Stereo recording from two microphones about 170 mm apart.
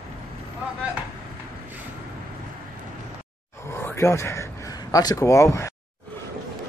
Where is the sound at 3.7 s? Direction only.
15° left (ahead or behind).